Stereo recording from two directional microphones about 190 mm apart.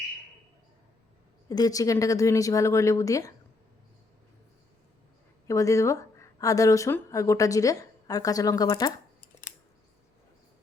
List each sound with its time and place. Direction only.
1.5 s speech: 20° left (ahead or behind)
5.5 s speech: 15° left (ahead or behind)